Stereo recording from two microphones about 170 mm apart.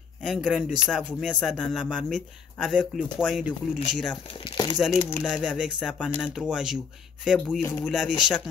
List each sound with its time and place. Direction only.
0.2 s speech: 5° right (ahead or behind)
4.5 s speech: 25° left (ahead or behind)
5.2 s speech: 5° right (ahead or behind)